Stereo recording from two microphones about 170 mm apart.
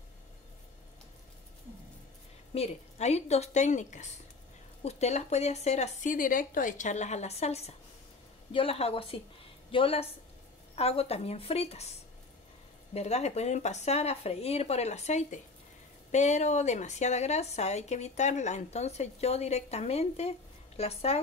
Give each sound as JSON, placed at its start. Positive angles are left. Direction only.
{"t": 2.5, "sound": "a woman's voice", "side_deg": 40}
{"t": 12.9, "sound": "a woman's voice", "side_deg": 40}